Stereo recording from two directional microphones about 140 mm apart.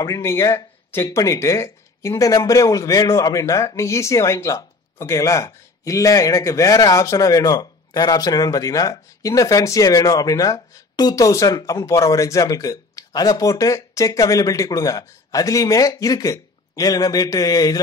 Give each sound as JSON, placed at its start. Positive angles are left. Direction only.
{"t": 0.0, "sound": "speech", "side_deg": 20}